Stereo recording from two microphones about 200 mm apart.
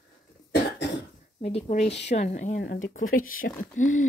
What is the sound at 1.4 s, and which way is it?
Speech, 35° left (ahead or behind).